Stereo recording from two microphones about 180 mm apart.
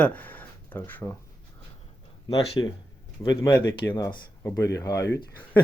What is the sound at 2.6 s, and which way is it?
Speech, 25° left (ahead or behind).